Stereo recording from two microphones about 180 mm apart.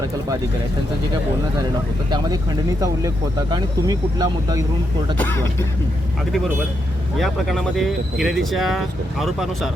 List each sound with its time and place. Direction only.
2.0 s speech: 25° right (ahead or behind)
3.5 s speech: 20° right (ahead or behind)
5.2 s speech: 15° left (ahead or behind)
7.2 s speech: centre (ahead or behind)